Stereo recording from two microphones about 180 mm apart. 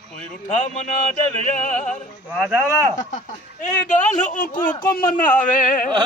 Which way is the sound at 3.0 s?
45° left (ahead or behind).